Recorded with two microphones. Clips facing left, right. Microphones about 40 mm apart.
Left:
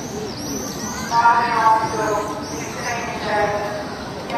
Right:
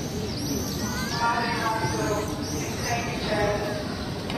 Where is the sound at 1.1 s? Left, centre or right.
Centre.